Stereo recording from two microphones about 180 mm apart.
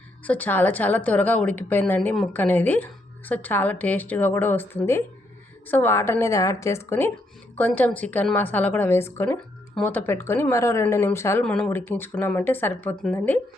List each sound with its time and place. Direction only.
0.3 s a woman's voice: 10° left (ahead or behind)